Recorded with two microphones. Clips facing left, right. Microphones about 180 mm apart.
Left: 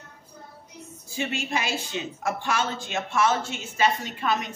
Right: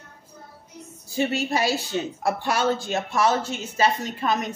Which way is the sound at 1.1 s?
40° right (ahead or behind).